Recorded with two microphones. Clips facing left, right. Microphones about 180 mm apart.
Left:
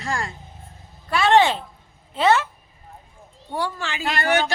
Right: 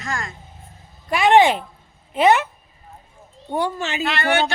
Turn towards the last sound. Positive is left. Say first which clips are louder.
# right 1 dB
turn(degrees=40)  # may be behind; listen again after turning